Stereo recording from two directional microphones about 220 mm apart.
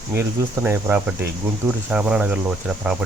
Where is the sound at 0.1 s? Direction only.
10° right (ahead or behind).